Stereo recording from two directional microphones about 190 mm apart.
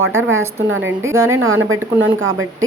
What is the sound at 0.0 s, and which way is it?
A woman's voice, 90° right.